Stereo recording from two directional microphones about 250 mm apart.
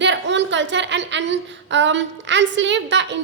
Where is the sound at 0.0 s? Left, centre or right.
Right.